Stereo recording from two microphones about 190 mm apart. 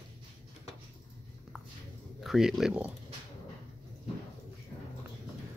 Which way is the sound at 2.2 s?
Centre (ahead or behind).